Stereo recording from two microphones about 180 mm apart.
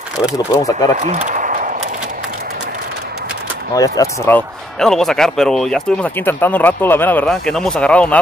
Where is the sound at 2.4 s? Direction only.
65° right (ahead or behind).